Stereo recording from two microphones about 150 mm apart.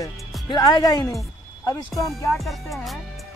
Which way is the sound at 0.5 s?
30° left (ahead or behind).